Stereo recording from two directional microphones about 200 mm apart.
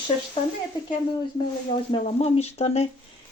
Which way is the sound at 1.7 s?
30° left (ahead or behind).